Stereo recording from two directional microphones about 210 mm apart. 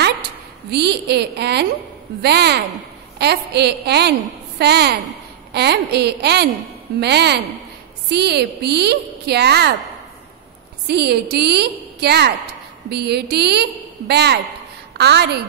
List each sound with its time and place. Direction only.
0.7 s a woman's voice: 50° right (ahead or behind)
10.9 s a woman's voice: 50° right (ahead or behind)